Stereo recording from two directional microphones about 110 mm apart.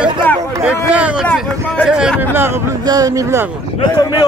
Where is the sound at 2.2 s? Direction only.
20° right (ahead or behind).